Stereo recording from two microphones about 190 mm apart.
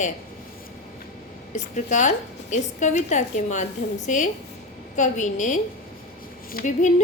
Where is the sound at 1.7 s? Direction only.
40° left (ahead or behind).